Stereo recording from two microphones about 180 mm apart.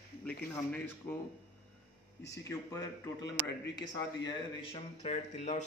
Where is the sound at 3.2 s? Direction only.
65° left (ahead or behind).